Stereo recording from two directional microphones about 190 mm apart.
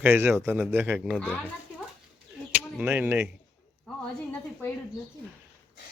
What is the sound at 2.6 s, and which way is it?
Speech, 10° right (ahead or behind).